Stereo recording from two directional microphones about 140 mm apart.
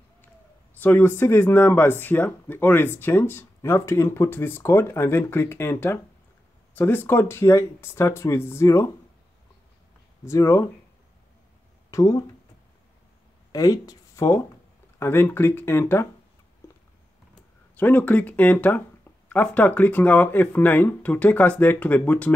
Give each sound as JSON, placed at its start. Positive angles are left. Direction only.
{"t": 0.7, "sound": "speech", "side_deg": 15}
{"t": 10.2, "sound": "speech", "side_deg": 20}
{"t": 11.9, "sound": "speech", "side_deg": 25}
{"t": 13.5, "sound": "speech", "side_deg": 25}
{"t": 17.7, "sound": "speech", "side_deg": 10}